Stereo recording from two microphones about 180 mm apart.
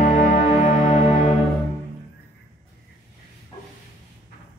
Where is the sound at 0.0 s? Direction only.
45° left (ahead or behind).